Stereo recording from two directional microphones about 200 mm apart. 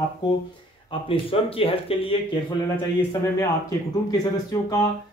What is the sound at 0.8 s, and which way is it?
Speech, 30° left (ahead or behind).